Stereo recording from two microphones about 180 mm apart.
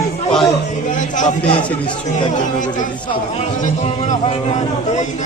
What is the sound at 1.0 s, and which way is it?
Speech, 45° left (ahead or behind).